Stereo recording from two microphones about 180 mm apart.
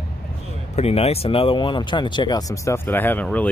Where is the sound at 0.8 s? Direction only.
35° left (ahead or behind).